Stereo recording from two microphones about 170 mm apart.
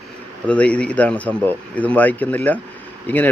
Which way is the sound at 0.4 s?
5° left (ahead or behind).